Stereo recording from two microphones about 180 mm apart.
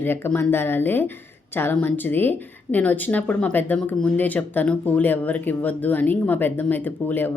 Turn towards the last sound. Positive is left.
turn(degrees=10)  # may be behind; listen again after turning